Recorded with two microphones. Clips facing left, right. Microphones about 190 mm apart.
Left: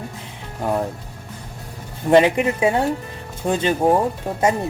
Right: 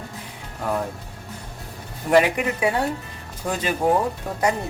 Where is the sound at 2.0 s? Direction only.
25° left (ahead or behind).